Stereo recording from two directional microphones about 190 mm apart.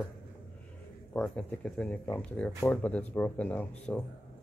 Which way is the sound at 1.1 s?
5° left (ahead or behind).